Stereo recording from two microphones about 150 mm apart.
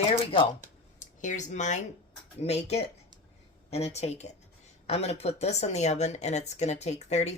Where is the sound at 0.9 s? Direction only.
55° left (ahead or behind).